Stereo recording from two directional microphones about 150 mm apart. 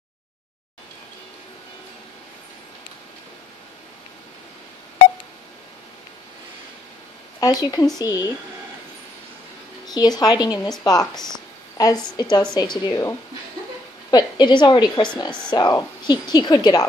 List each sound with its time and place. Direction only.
7.3 s a woman's voice: 25° left (ahead or behind)
9.8 s a woman's voice: 25° left (ahead or behind)
14.1 s a woman's voice: 30° left (ahead or behind)